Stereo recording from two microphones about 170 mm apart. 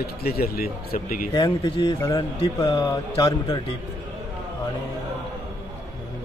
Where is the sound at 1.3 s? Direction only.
25° left (ahead or behind).